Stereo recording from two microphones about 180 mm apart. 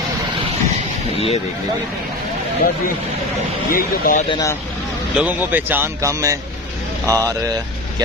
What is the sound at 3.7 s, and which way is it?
Speech, 50° left (ahead or behind).